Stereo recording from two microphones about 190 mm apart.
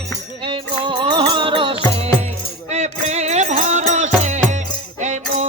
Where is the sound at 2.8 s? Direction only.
35° right (ahead or behind).